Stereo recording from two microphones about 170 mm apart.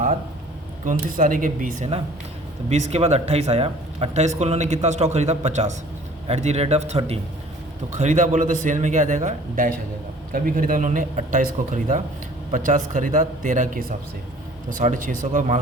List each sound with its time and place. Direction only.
0.9 s a man's voice: 50° right (ahead or behind)
2.6 s a man's voice: 40° right (ahead or behind)